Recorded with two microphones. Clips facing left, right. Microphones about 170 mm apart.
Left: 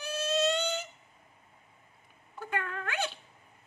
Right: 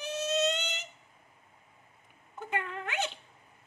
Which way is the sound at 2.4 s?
20° right (ahead or behind).